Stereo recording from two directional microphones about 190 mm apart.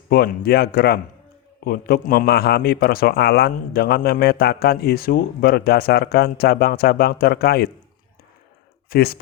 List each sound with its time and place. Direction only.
0.1 s a man's voice: 55° left (ahead or behind)
8.9 s speech: 55° left (ahead or behind)